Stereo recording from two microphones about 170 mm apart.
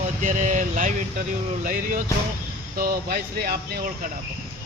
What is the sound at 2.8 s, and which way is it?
Speech, 65° right (ahead or behind).